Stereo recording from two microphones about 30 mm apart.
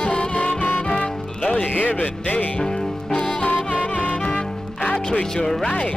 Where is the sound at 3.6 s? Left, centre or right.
Left.